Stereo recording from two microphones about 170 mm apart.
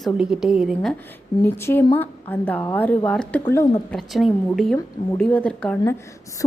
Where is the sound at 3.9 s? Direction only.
Centre (ahead or behind).